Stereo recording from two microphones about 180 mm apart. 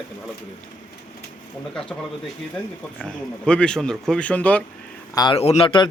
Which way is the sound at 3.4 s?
5° left (ahead or behind).